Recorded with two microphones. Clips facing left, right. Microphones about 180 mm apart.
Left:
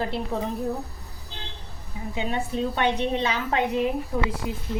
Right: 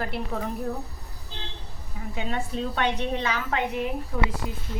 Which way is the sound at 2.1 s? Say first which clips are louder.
Left 2 dB; 20° left (ahead or behind).